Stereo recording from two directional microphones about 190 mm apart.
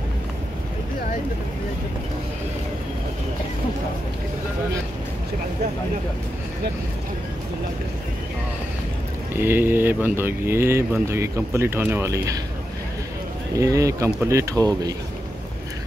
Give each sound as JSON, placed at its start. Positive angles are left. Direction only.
{"t": 9.3, "sound": "speech", "side_deg": -10}
{"t": 13.6, "sound": "speech", "side_deg": -15}